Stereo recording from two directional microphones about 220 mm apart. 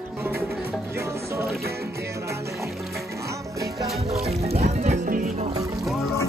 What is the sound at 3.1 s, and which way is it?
Music, 15° right (ahead or behind).